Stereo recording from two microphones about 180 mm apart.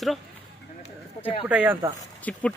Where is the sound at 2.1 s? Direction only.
10° left (ahead or behind).